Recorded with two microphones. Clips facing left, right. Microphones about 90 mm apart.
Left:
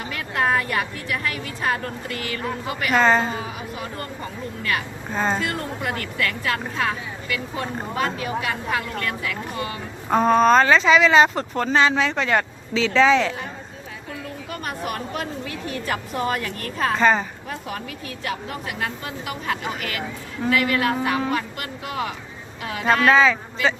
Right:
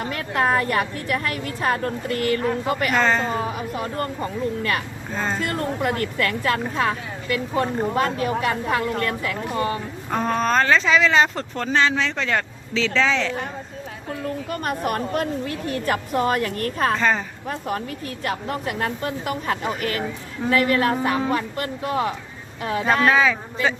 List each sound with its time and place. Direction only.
0.0 s speech: 40° right (ahead or behind)
3.0 s speech: 15° left (ahead or behind)
3.4 s speech: 45° right (ahead or behind)
5.1 s speech: 15° left (ahead or behind)
5.5 s speech: 45° right (ahead or behind)
10.1 s speech: 15° left (ahead or behind)
14.5 s speech: 45° right (ahead or behind)
17.0 s speech: 10° left (ahead or behind)
18.2 s speech: 45° right (ahead or behind)
22.9 s speech: 5° right (ahead or behind)